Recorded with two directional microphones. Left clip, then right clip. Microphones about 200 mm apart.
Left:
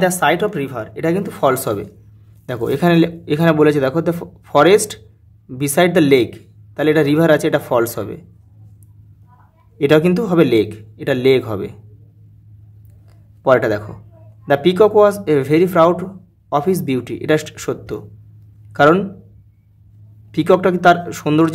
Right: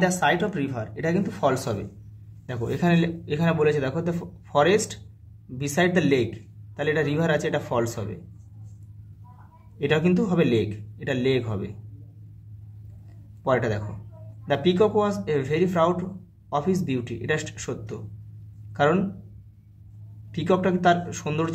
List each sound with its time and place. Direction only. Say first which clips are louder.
0.0 s speech: left 7 dB; 45° left (ahead or behind)
9.8 s speech: left 10 dB; 50° left (ahead or behind)
13.4 s a man's voice: left 10 dB; 50° left (ahead or behind)
20.2 s speech: left 10 dB; 50° left (ahead or behind)